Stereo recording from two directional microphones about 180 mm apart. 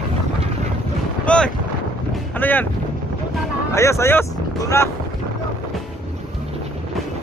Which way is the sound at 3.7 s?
15° left (ahead or behind).